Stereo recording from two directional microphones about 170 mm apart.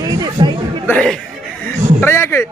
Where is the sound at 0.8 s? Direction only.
5° left (ahead or behind).